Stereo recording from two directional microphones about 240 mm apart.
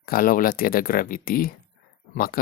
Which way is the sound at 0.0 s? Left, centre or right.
Left.